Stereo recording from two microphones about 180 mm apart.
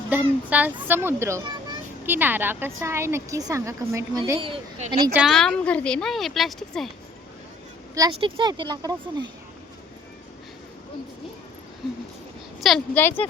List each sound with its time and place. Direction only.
0.1 s a woman's voice: 10° right (ahead or behind); by 4.9 s 30° right (ahead or behind)
5.1 s speech: centre (ahead or behind)
7.9 s a woman's voice: 25° right (ahead or behind)
12.5 s a woman's voice: centre (ahead or behind)